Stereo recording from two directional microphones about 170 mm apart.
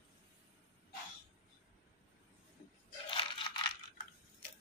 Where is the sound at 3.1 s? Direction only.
30° left (ahead or behind).